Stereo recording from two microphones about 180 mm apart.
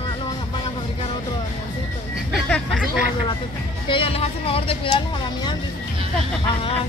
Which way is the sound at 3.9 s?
30° left (ahead or behind).